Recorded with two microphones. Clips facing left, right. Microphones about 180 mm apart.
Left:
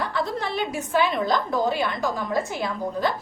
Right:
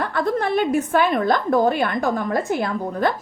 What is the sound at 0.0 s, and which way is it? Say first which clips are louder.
A woman's voice: right 5 dB; 50° right (ahead or behind).